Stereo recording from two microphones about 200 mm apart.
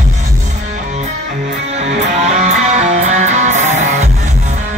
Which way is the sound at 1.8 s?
35° right (ahead or behind).